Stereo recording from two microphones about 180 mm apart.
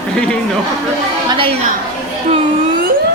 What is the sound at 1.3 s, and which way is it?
Speech, 30° right (ahead or behind).